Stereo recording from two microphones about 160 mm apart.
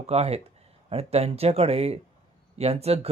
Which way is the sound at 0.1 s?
40° right (ahead or behind).